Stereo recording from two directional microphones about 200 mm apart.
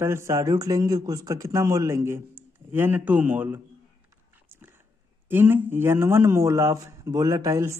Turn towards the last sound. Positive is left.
turn(degrees=-15)  # may be behind; listen again after turning